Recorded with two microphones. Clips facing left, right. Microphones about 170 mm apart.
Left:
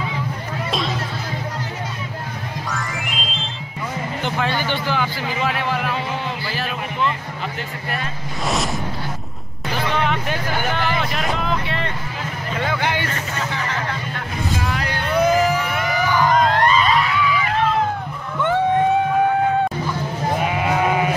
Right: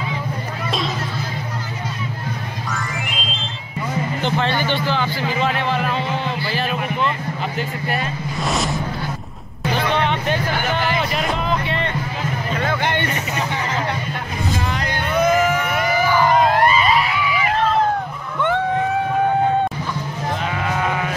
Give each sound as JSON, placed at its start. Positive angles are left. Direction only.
{"t": 2.7, "sound": "music", "side_deg": 0}
{"t": 4.2, "sound": "speech", "side_deg": 10}
{"t": 9.9, "sound": "speech", "side_deg": 0}
{"t": 11.0, "sound": "vehicle", "side_deg": 0}
{"t": 14.7, "sound": "vehicle", "side_deg": 5}
{"t": 15.1, "sound": "a sound", "side_deg": 35}
{"t": 15.7, "sound": "crowd", "side_deg": -10}
{"t": 20.3, "sound": "sheep", "side_deg": 10}